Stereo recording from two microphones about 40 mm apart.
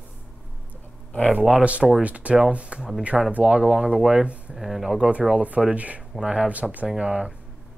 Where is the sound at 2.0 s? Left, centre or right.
Right.